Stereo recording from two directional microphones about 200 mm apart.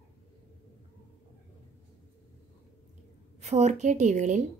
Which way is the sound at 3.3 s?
35° right (ahead or behind).